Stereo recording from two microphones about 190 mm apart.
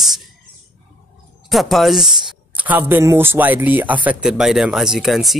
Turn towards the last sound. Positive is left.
turn(degrees=0)  # may be behind; listen again after turning